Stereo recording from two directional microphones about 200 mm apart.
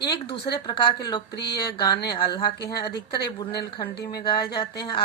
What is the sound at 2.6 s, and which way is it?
Speech, 55° left (ahead or behind).